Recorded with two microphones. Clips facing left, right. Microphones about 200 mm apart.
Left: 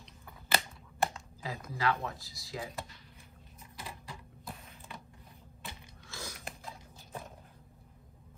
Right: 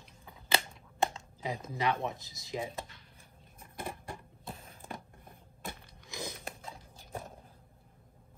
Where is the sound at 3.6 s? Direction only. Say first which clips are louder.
Right 6 dB; 55° right (ahead or behind).